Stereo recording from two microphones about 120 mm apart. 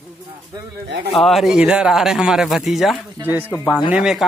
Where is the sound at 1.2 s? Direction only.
Centre (ahead or behind).